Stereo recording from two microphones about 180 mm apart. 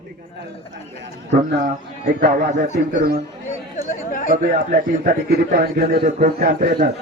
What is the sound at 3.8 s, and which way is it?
Chatter, 45° left (ahead or behind).